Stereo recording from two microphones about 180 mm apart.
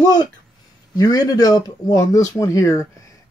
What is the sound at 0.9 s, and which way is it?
Speech, 20° left (ahead or behind).